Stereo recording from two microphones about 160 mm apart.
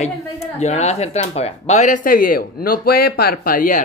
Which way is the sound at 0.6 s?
40° left (ahead or behind).